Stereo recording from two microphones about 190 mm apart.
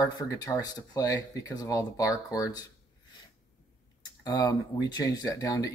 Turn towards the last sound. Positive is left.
turn(degrees=15)  # may be behind; listen again after turning